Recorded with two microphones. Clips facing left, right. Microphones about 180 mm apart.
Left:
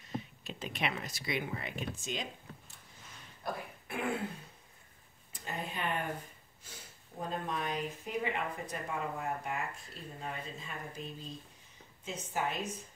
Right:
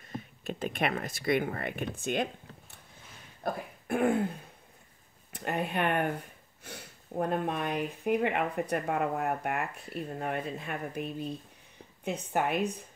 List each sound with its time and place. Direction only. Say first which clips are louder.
0.4 s speech: right 9 dB; 50° right (ahead or behind)
3.4 s speech: right 6 dB; 50° right (ahead or behind)
5.3 s speech: right 9 dB; 65° right (ahead or behind)